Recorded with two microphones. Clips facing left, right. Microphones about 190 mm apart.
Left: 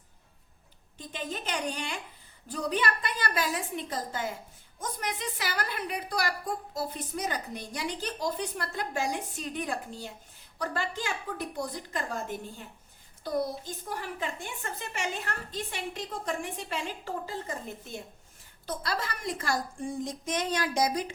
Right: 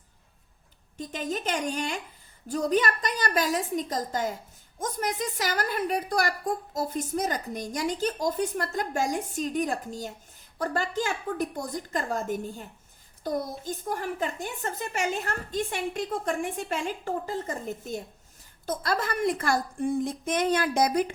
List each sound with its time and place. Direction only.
0.9 s a woman's voice: 45° right (ahead or behind)